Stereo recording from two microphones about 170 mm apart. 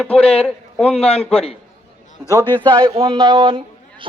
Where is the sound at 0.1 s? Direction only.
35° left (ahead or behind).